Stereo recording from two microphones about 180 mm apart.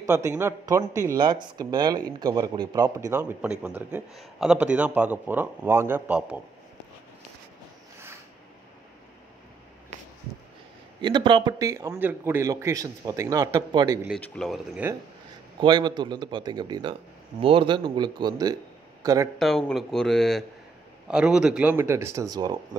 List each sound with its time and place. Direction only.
0.0 s a man's voice: 15° right (ahead or behind)
11.0 s speech: 25° right (ahead or behind)
14.2 s speech: 5° left (ahead or behind)
15.6 s speech: 25° right (ahead or behind)
19.3 s a man's voice: centre (ahead or behind); by 22.6 s 20° right (ahead or behind)